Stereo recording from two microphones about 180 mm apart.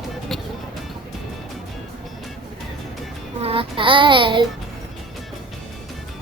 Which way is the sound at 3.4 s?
30° right (ahead or behind).